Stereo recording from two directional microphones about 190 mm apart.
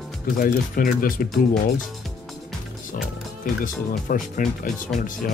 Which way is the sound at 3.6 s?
45° left (ahead or behind).